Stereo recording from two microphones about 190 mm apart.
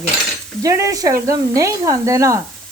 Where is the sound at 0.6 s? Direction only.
15° right (ahead or behind).